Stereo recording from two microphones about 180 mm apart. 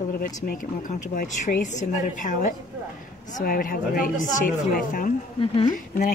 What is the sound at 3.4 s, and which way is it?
A woman's voice, 55° left (ahead or behind).